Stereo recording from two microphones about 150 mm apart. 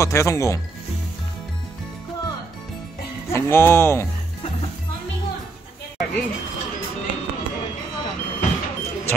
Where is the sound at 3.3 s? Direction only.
15° left (ahead or behind).